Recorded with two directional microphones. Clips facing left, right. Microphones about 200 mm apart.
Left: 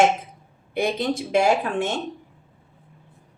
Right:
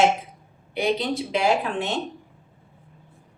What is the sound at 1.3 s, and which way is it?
Speech, 45° left (ahead or behind).